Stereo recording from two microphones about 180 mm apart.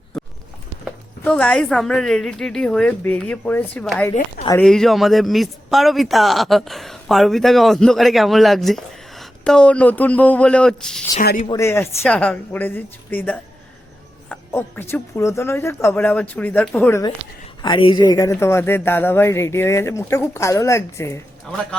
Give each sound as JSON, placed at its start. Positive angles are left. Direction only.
{"t": 0.1, "sound": "horse", "side_deg": 0}
{"t": 1.2, "sound": "a man's voice", "side_deg": 5}
{"t": 11.1, "sound": "speech", "side_deg": 50}
{"t": 11.4, "sound": "speech", "side_deg": 15}
{"t": 17.6, "sound": "speech", "side_deg": 25}